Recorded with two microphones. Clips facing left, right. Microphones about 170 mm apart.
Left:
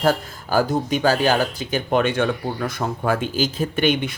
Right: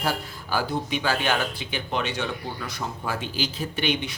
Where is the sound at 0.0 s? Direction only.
45° left (ahead or behind).